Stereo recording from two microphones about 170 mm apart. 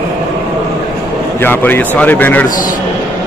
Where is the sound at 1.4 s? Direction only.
10° left (ahead or behind).